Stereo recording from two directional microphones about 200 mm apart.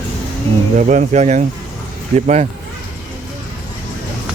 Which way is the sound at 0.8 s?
40° right (ahead or behind).